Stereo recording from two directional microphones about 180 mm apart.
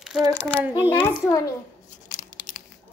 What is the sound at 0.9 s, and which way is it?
Speech, 20° left (ahead or behind).